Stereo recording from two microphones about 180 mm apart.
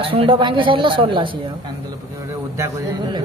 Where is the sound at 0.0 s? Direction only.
30° right (ahead or behind).